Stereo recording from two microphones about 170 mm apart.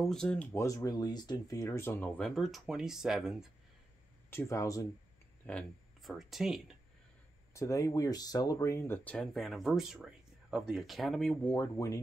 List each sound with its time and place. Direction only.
0.0 s speech: 5° left (ahead or behind)
4.3 s speech: 15° left (ahead or behind)
5.5 s speech: 5° left (ahead or behind)
7.5 s speech: 20° left (ahead or behind)